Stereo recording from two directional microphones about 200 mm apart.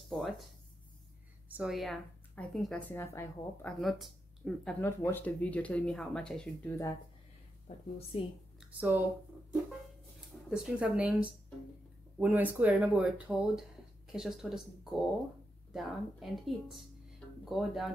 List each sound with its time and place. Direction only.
0.1 s speech: centre (ahead or behind)
1.6 s speech: centre (ahead or behind)
3.8 s speech: centre (ahead or behind)
7.6 s a woman's voice: 25° left (ahead or behind)
8.5 s speech: 10° right (ahead or behind)
10.5 s speech: 5° right (ahead or behind)